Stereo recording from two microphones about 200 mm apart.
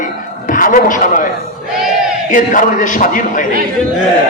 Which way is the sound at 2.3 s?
40° left (ahead or behind).